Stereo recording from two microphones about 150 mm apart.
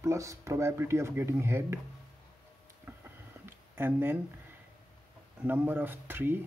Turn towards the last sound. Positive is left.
turn(degrees=-15)  # may be behind; listen again after turning